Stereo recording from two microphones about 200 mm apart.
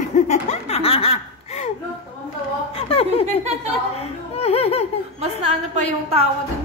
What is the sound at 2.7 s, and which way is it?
A woman's voice, 30° left (ahead or behind).